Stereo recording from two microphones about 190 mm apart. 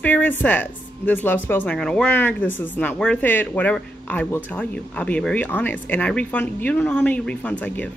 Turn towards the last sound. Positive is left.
turn(degrees=5)  # may be behind; listen again after turning